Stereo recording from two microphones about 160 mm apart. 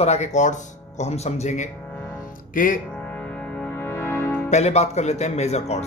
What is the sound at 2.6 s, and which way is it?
Speech, 60° left (ahead or behind).